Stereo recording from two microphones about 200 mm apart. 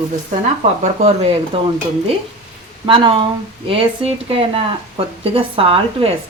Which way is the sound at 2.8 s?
25° right (ahead or behind).